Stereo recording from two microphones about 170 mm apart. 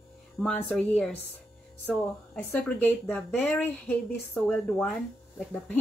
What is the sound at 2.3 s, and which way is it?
Speech, 5° left (ahead or behind).